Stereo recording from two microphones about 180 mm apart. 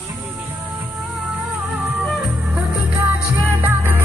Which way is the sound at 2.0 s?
Centre (ahead or behind).